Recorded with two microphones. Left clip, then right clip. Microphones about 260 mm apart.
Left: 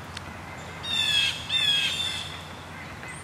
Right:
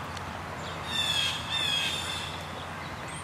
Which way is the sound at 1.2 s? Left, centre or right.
Centre.